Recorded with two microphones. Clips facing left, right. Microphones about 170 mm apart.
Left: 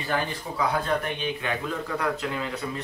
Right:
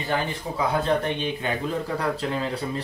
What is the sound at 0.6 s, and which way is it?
Speech, 25° right (ahead or behind).